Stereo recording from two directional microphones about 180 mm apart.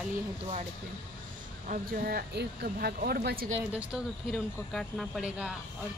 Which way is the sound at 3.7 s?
Centre (ahead or behind).